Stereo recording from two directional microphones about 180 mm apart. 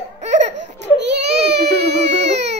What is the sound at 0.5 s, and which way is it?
Baby cry, 75° right (ahead or behind).